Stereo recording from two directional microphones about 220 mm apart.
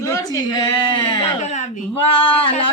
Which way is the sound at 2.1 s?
25° left (ahead or behind).